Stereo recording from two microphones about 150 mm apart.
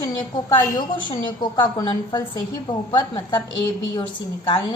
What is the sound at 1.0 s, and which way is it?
A woman's voice, 30° left (ahead or behind).